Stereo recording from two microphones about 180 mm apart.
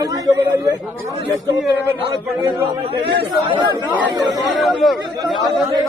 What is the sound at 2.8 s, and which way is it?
Speech, 30° right (ahead or behind).